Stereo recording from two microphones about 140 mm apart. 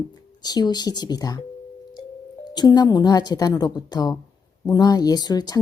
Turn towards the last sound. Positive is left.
turn(degrees=30)  # may be behind; listen again after turning